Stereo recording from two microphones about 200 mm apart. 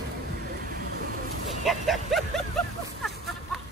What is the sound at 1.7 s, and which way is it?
Speech, centre (ahead or behind).